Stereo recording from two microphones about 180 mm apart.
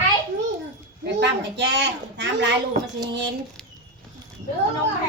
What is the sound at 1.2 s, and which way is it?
A woman's voice, 75° right (ahead or behind).